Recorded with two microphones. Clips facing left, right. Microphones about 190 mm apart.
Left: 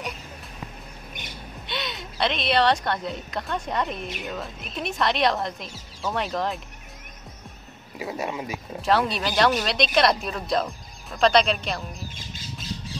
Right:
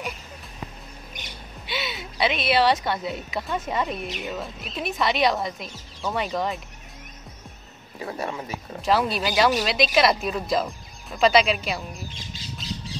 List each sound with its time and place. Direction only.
1.7 s a woman's voice: 5° right (ahead or behind)
8.0 s speech: 10° left (ahead or behind)
8.8 s speech: centre (ahead or behind)
12.1 s squawk: 50° left (ahead or behind)